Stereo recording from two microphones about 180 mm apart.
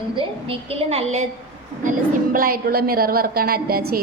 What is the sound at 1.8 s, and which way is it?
A woman's voice, 50° right (ahead or behind).